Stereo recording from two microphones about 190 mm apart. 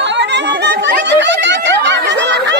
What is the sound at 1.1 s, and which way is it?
Snicker, 70° right (ahead or behind).